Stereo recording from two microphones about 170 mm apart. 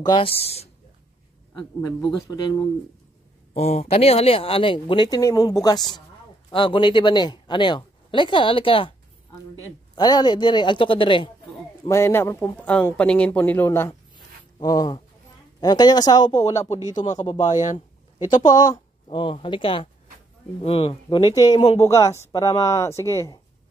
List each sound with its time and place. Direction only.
0.0 s speech: 30° left (ahead or behind)
1.5 s speech: 25° left (ahead or behind)
3.5 s speech: 40° left (ahead or behind)
9.9 s speech: 25° left (ahead or behind)
11.9 s speech: 15° left (ahead or behind)
14.1 s a sound: 20° left (ahead or behind)
15.6 s speech: 25° left (ahead or behind)
16.6 s speech: 40° left (ahead or behind)
18.5 s speech: 25° left (ahead or behind)
21.3 s speech: 25° left (ahead or behind)